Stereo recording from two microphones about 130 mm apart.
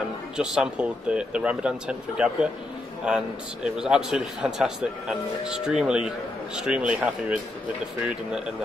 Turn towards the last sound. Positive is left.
turn(degrees=-10)  # may be behind; listen again after turning